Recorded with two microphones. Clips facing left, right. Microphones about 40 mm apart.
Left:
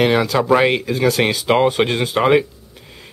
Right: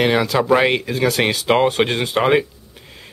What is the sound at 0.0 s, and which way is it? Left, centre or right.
Speech, centre.